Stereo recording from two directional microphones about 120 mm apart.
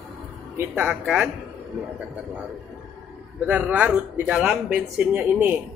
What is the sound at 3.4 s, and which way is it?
Speech, 15° right (ahead or behind).